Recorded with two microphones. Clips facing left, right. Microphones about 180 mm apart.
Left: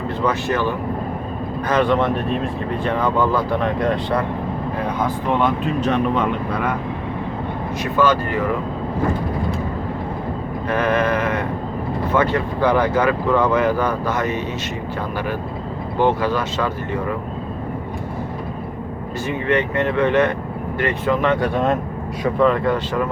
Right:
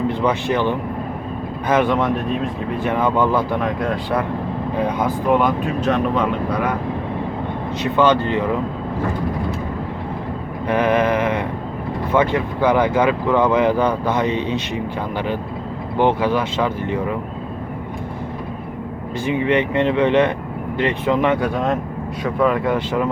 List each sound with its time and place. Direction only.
0.3 s speech: 15° right (ahead or behind)
1.7 s speech: 10° right (ahead or behind)
2.9 s speech: 15° right (ahead or behind)
3.6 s speech: centre (ahead or behind)
4.9 s speech: 15° right (ahead or behind)
5.4 s speech: 5° left (ahead or behind)
7.9 s speech: 20° right (ahead or behind)
10.7 s speech: 15° right (ahead or behind)
16.0 s speech: 15° right (ahead or behind)
19.2 s speech: 15° right (ahead or behind)
21.4 s speech: centre (ahead or behind)